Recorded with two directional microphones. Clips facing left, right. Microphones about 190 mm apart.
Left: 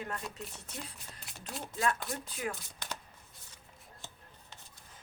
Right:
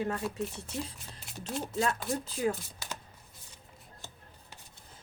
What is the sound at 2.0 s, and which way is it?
Speech, 35° right (ahead or behind).